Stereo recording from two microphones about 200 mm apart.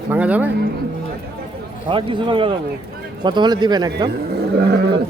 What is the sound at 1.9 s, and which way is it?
A man's voice, 25° right (ahead or behind).